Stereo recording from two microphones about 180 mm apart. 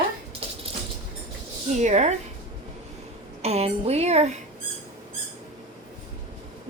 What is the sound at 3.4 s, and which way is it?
Speech, 35° right (ahead or behind).